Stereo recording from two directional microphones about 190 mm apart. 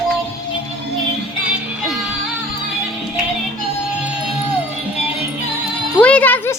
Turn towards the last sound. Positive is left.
turn(degrees=10)  # may be behind; listen again after turning